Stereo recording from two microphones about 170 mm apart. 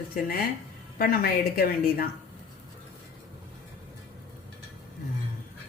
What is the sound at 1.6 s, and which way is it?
Speech, 60° left (ahead or behind).